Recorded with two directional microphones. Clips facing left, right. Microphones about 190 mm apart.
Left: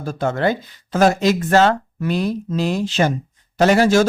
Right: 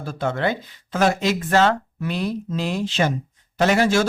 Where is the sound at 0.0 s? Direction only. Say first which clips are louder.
Left 4 dB; 45° left (ahead or behind).